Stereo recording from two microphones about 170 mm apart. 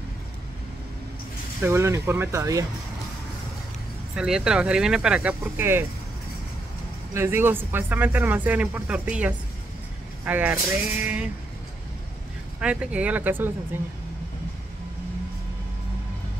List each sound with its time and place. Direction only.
1.6 s speech: 15° right (ahead or behind)
4.1 s speech: 5° right (ahead or behind)
7.2 s speech: 15° right (ahead or behind)
12.5 s speech: 5° right (ahead or behind)